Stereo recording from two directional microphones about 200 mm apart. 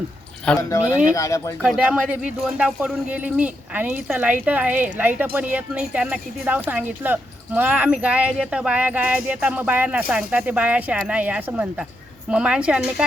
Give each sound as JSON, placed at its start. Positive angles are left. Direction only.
{"t": 0.5, "sound": "a woman's voice", "side_deg": 5}
{"t": 1.1, "sound": "speech", "side_deg": 15}
{"t": 1.6, "sound": "a woman's voice", "side_deg": -5}